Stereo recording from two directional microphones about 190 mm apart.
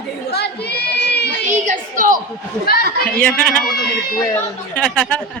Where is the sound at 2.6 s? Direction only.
55° left (ahead or behind).